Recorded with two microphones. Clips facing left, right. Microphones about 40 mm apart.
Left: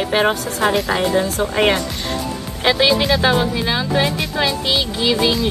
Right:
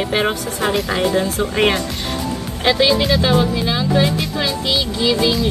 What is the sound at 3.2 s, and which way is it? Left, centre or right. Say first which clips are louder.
Speech: even; centre.